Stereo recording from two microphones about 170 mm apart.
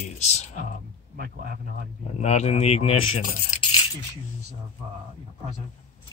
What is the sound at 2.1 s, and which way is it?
Speech, 40° left (ahead or behind).